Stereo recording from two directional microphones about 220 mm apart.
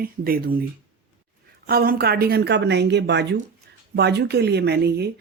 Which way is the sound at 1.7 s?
45° right (ahead or behind).